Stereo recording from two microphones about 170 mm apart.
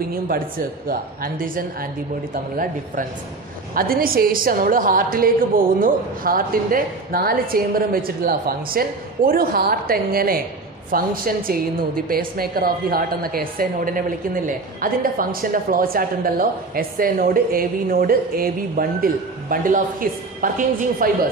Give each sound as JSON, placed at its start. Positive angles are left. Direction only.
{"t": 0.1, "sound": "a woman's voice", "side_deg": -60}